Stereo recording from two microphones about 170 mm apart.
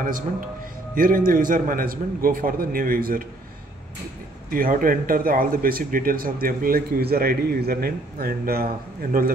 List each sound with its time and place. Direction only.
0.9 s a man's voice: 55° right (ahead or behind)
4.5 s a man's voice: 55° right (ahead or behind)